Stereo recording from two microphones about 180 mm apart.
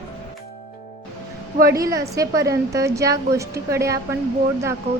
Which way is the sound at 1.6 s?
20° right (ahead or behind).